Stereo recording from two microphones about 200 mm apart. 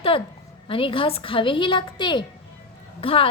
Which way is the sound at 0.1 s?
25° left (ahead or behind).